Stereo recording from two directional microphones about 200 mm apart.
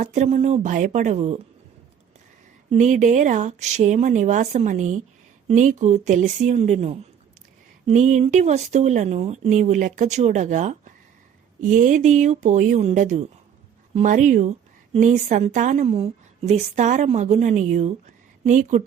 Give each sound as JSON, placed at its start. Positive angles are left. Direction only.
{"t": 0.0, "sound": "speech", "side_deg": -35}
{"t": 2.6, "sound": "speech", "side_deg": -40}